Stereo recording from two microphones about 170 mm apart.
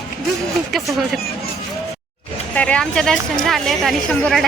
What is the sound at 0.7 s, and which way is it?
Speech, centre (ahead or behind).